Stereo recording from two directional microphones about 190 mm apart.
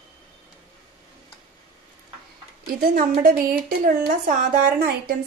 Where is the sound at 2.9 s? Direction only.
50° right (ahead or behind).